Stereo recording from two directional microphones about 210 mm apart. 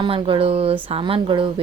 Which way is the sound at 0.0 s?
25° right (ahead or behind).